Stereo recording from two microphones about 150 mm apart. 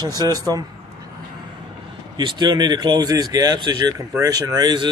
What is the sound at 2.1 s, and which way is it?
Speech, 30° right (ahead or behind).